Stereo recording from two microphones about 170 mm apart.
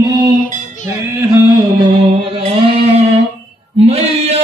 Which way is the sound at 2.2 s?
35° right (ahead or behind).